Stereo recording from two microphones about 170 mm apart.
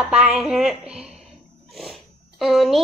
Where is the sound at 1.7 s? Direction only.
Centre (ahead or behind).